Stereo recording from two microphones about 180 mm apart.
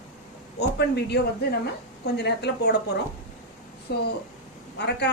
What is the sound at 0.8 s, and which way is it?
A woman's voice, 65° left (ahead or behind).